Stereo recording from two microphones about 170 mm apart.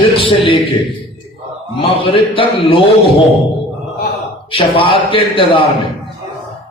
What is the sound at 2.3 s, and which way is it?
Speech, 30° left (ahead or behind).